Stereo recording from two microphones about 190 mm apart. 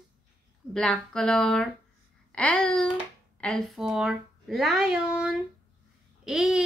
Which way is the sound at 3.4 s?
Centre (ahead or behind).